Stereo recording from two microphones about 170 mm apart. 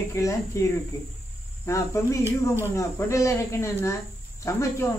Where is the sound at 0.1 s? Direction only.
15° left (ahead or behind).